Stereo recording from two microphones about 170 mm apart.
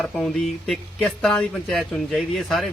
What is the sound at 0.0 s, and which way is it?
Speech, centre (ahead or behind).